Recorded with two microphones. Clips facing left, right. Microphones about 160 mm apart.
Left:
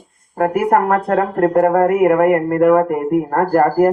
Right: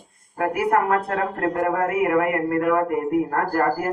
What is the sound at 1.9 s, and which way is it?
Speech, 50° left (ahead or behind).